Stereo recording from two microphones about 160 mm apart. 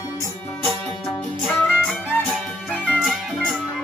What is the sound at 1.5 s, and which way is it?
Music, 10° left (ahead or behind).